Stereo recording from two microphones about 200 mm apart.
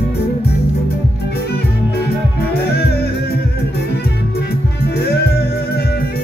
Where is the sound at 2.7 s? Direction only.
55° left (ahead or behind).